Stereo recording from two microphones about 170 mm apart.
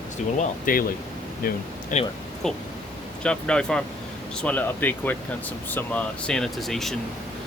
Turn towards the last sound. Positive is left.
turn(degrees=0)  # may be behind; listen again after turning